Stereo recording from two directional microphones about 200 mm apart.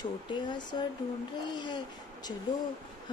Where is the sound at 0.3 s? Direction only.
20° left (ahead or behind).